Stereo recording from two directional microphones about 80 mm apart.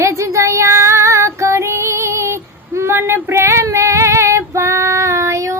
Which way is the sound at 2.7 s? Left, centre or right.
Right.